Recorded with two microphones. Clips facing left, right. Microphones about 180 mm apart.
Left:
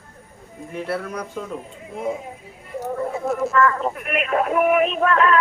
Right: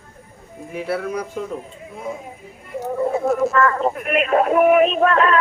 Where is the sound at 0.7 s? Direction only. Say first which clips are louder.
Right 3 dB; 5° right (ahead or behind).